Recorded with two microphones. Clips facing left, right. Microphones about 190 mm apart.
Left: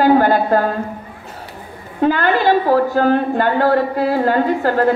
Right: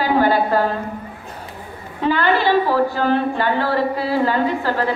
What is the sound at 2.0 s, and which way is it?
A woman's voice, 45° left (ahead or behind).